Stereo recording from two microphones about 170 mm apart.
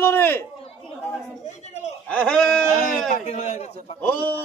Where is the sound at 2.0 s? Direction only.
5° left (ahead or behind).